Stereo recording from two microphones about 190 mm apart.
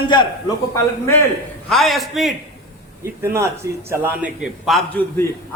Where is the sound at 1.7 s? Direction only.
Centre (ahead or behind).